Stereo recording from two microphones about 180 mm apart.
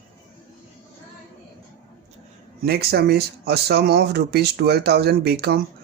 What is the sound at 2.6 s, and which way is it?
Speech, 60° right (ahead or behind).